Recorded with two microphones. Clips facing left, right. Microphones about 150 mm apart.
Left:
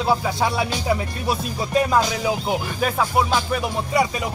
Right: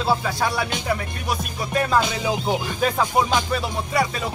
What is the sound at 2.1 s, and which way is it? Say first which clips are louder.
Speech: left 1 dB; 5° left (ahead or behind).